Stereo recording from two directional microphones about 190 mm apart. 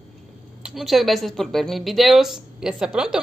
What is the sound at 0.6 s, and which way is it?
A woman's voice, centre (ahead or behind).